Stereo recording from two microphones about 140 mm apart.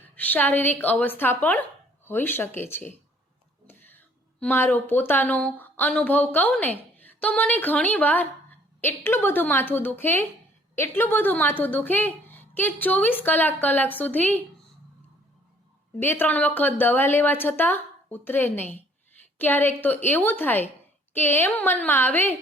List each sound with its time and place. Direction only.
0.2 s a woman's voice: 10° left (ahead or behind)
16.0 s a woman's voice: 15° left (ahead or behind)